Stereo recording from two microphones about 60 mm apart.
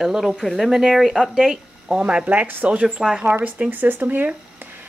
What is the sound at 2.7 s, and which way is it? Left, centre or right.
Speech, centre.